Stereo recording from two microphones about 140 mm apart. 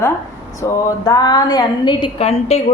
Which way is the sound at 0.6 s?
25° left (ahead or behind).